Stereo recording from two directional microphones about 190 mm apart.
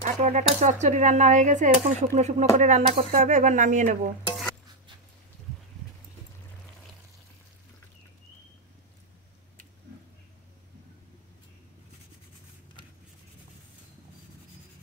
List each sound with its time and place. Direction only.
0.0 s typewriter: 40° right (ahead or behind)
0.6 s speech: 40° right (ahead or behind)